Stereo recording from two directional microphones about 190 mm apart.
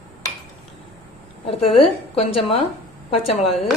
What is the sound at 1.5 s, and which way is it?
A woman's voice, 30° left (ahead or behind).